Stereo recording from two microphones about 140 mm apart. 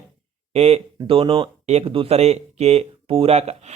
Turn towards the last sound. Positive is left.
turn(degrees=-50)  # may be behind; listen again after turning